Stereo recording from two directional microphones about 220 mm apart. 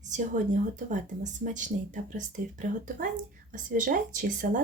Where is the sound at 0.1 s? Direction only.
35° right (ahead or behind).